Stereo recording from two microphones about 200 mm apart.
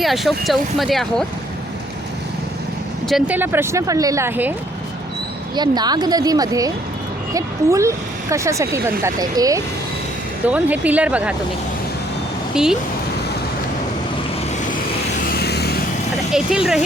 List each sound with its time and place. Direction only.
0.0 s speech: centre (ahead or behind)
3.1 s speech: 5° right (ahead or behind)
5.5 s a woman's voice: 20° right (ahead or behind)
12.5 s speech: 5° right (ahead or behind)
15.3 s vehicle: 55° left (ahead or behind)
16.3 s speech: 5° right (ahead or behind)